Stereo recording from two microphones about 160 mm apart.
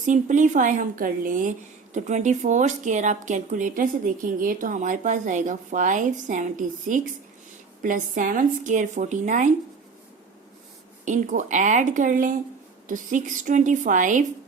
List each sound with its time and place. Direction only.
0.0 s a woman's voice: 50° right (ahead or behind)
11.0 s a woman's voice: 50° right (ahead or behind)